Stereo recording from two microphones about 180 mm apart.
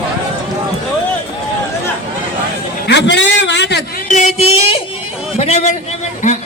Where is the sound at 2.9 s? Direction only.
75° left (ahead or behind).